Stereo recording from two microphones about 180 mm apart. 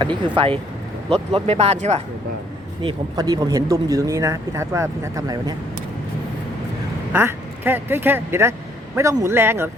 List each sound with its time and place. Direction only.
0.3 s speech: 30° right (ahead or behind)
2.8 s speech: 20° right (ahead or behind)
7.1 s speech: 10° right (ahead or behind)